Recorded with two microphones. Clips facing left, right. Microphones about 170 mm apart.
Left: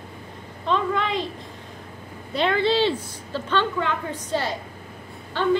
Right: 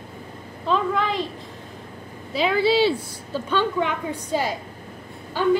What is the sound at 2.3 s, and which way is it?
A woman's voice, 5° right (ahead or behind).